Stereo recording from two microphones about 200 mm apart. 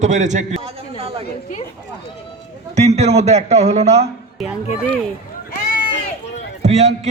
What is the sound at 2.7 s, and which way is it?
A man's voice, 35° right (ahead or behind).